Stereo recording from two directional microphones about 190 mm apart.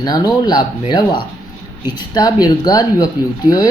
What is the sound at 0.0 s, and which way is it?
Speech, 20° left (ahead or behind).